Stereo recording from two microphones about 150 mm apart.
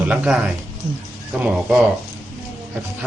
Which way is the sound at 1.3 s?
Centre (ahead or behind).